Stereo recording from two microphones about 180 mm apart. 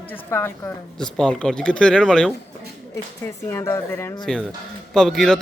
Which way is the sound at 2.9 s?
15° left (ahead or behind).